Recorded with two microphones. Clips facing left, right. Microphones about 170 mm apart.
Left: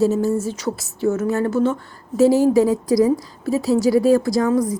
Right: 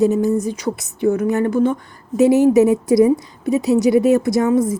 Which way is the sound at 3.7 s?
20° right (ahead or behind).